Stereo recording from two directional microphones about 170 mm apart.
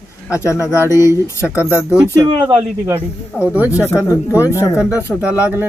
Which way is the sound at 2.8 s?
10° right (ahead or behind).